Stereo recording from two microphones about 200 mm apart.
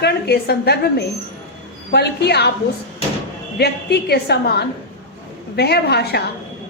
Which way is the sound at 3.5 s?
55° left (ahead or behind).